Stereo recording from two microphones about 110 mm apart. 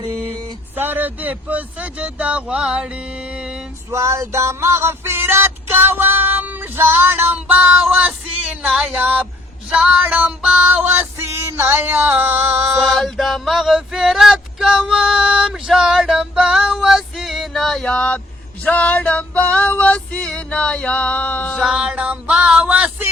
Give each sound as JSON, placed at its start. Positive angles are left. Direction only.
{"t": 0.8, "sound": "music", "side_deg": -15}
{"t": 3.9, "sound": "music", "side_deg": -25}
{"t": 9.0, "sound": "music", "side_deg": -15}
{"t": 12.8, "sound": "male singing", "side_deg": 0}
{"t": 18.6, "sound": "female singing", "side_deg": 15}
{"t": 21.6, "sound": "a sound", "side_deg": -5}